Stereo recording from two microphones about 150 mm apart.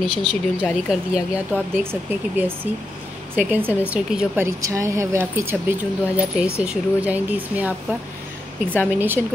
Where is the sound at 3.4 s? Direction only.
10° right (ahead or behind).